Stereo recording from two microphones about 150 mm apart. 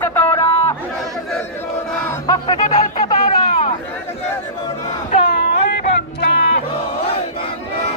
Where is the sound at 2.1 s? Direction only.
25° left (ahead or behind).